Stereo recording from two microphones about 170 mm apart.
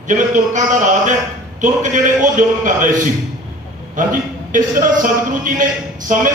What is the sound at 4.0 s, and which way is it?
A man's voice, 50° right (ahead or behind).